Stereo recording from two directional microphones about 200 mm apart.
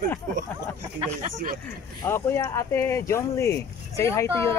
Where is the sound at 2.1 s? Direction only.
10° left (ahead or behind).